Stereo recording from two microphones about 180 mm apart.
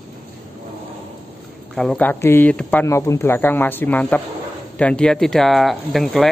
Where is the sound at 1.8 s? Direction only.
5° left (ahead or behind).